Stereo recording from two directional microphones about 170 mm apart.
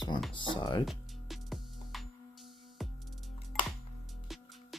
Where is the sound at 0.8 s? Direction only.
Centre (ahead or behind).